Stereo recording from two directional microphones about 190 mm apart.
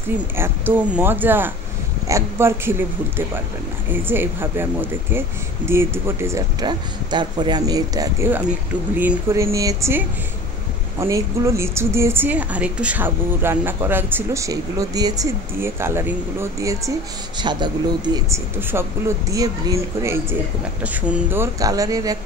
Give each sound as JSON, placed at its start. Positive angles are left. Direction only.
{"t": 0.4, "sound": "speech", "side_deg": -10}
{"t": 3.9, "sound": "speech", "side_deg": -10}
{"t": 5.7, "sound": "speech", "side_deg": -15}